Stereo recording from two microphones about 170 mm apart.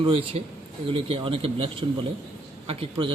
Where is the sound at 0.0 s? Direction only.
30° right (ahead or behind).